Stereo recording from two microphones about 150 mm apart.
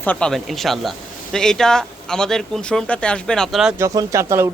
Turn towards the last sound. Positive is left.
turn(degrees=-20)  # may be behind; listen again after turning